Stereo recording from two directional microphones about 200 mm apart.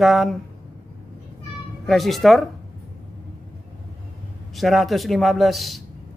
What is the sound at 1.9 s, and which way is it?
Speech, centre (ahead or behind).